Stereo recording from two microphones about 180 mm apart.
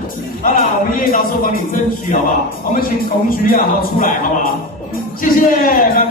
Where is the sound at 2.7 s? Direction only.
50° left (ahead or behind).